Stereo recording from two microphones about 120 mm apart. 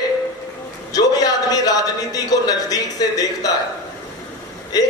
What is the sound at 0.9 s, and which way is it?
A man's voice, 30° left (ahead or behind).